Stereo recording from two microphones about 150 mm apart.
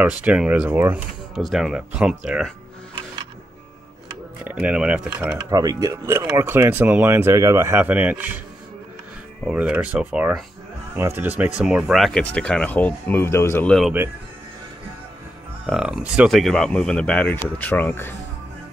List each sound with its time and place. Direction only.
0.0 s speech: 10° right (ahead or behind)
1.3 s speech: centre (ahead or behind)
4.5 s speech: 10° right (ahead or behind)
5.5 s speech: 25° right (ahead or behind)
9.5 s speech: 5° right (ahead or behind); by 13.7 s 15° left (ahead or behind)
15.6 s speech: 5° right (ahead or behind); by 18.1 s 15° left (ahead or behind)